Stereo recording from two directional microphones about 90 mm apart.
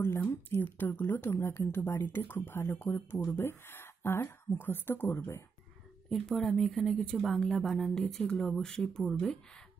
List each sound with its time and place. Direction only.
0.0 s speech: 25° left (ahead or behind)
6.0 s speech: 5° left (ahead or behind)